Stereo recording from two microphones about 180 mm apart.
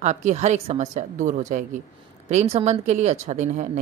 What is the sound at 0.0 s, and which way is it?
A woman's voice, 40° right (ahead or behind).